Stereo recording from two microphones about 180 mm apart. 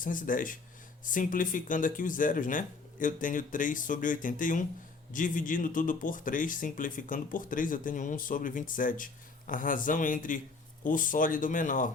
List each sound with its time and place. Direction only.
0.0 s speech: 50° left (ahead or behind)